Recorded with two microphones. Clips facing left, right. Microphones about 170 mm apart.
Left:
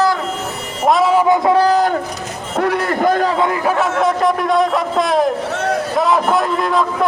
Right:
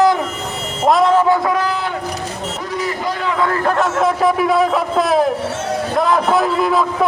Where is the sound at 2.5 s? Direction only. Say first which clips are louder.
Left 9 dB; 65° left (ahead or behind); by 3.3 s 50° left (ahead or behind).